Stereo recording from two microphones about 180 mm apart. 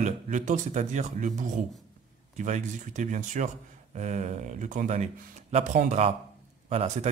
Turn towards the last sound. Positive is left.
turn(degrees=-40)  # may be behind; listen again after turning